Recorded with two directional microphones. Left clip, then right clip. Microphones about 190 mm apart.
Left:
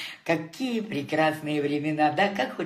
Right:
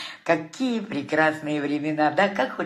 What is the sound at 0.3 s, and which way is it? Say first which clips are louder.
A man's voice: right 4 dB; 10° right (ahead or behind).